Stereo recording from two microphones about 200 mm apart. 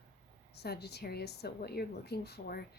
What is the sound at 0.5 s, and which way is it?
A woman's voice, 55° left (ahead or behind).